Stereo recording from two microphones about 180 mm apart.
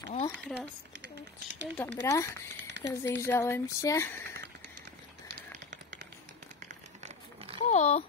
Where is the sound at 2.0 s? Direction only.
15° left (ahead or behind).